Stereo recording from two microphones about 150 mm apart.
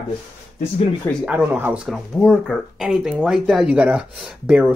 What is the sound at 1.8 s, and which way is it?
Speech, 5° left (ahead or behind).